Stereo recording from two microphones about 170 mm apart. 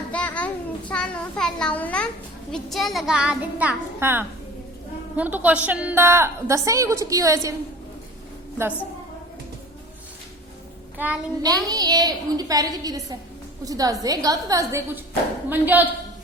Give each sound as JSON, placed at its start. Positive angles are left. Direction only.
{"t": 0.1, "sound": "a sound", "side_deg": 10}
{"t": 2.5, "sound": "a woman's voice", "side_deg": 0}
{"t": 10.9, "sound": "child singing", "side_deg": -10}
{"t": 11.4, "sound": "a woman's voice", "side_deg": -20}